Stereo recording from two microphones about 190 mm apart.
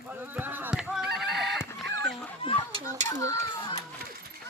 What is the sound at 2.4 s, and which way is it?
Children playing, 25° left (ahead or behind).